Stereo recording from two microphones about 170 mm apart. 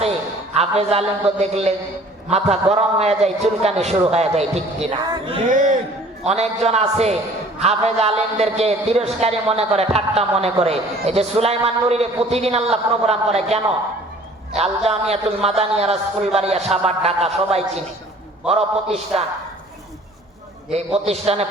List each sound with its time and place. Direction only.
0.5 s a man's voice: 40° right (ahead or behind)
4.9 s speech: 25° right (ahead or behind)
5.5 s a man's voice: 50° right (ahead or behind)
20.7 s a man's voice: 35° right (ahead or behind)